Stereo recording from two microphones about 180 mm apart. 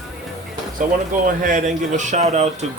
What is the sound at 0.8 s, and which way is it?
Speech, 50° right (ahead or behind).